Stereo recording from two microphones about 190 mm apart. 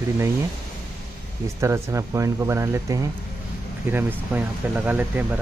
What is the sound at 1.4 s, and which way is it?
Speech, 15° right (ahead or behind).